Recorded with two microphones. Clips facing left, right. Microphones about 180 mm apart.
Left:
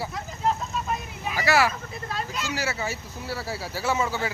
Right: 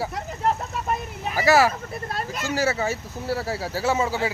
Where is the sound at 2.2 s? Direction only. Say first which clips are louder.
Right 5 dB; 50° right (ahead or behind).